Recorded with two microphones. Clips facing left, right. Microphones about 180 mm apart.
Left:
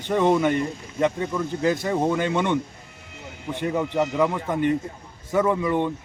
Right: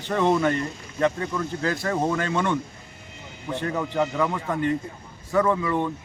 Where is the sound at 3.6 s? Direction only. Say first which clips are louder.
Left 2 dB; 15° left (ahead or behind).